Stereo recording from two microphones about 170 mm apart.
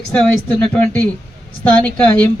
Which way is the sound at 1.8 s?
10° left (ahead or behind).